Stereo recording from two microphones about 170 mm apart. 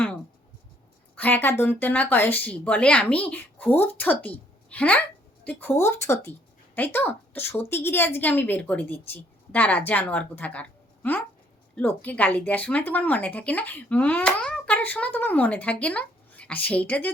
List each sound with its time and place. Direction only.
1.1 s speech: 10° left (ahead or behind)